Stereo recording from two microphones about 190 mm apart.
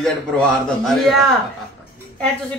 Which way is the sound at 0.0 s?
5° left (ahead or behind).